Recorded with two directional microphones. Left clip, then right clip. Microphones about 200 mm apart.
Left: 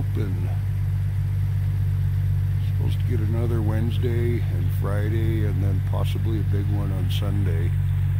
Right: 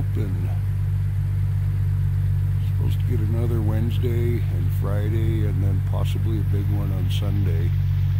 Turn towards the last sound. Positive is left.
turn(degrees=0)  # may be behind; listen again after turning